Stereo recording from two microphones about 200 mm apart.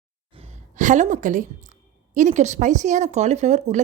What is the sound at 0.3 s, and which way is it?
A woman's voice, 35° right (ahead or behind).